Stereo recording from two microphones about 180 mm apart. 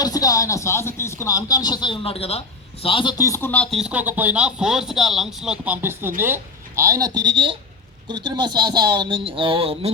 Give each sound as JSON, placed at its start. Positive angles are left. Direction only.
{"t": 0.0, "sound": "speech", "side_deg": 20}